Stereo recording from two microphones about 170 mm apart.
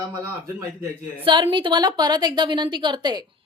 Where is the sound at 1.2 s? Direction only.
30° right (ahead or behind).